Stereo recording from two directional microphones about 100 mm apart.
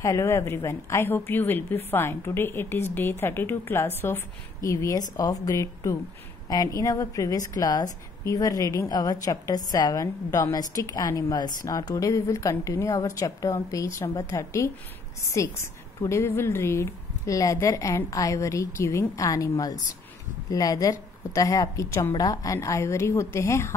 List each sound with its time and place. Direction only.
0.0 s a woman's voice: 30° left (ahead or behind)
4.6 s a woman's voice: 35° left (ahead or behind)